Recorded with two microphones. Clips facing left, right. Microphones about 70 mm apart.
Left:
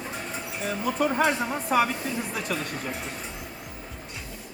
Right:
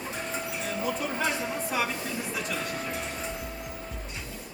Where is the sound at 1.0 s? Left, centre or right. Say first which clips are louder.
Left 6 dB; left.